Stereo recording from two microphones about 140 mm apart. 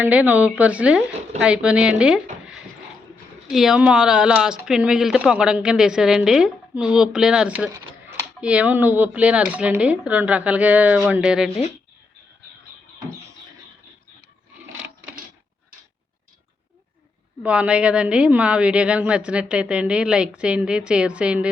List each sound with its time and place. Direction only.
0.0 s a woman's voice: 10° right (ahead or behind)
3.5 s a woman's voice: 5° right (ahead or behind)
17.4 s a woman's voice: 10° right (ahead or behind)